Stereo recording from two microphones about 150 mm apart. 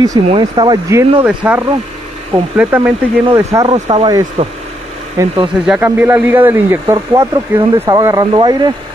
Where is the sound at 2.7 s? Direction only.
10° right (ahead or behind).